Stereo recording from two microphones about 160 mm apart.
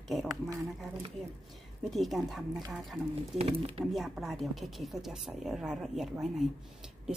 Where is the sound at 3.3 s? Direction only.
35° right (ahead or behind).